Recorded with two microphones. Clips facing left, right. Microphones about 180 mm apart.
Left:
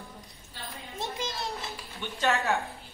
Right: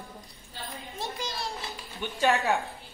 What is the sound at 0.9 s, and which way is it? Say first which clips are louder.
Children playing: left 1 dB; 20° left (ahead or behind).